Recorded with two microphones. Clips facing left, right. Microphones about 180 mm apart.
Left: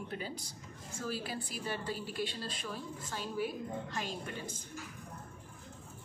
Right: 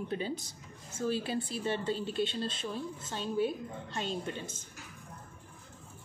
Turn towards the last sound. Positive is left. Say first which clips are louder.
# right 4 dB
turn(degrees=-25)  # may be behind; listen again after turning